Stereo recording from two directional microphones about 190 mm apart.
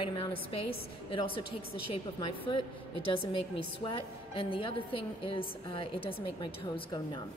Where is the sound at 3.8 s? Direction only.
25° left (ahead or behind).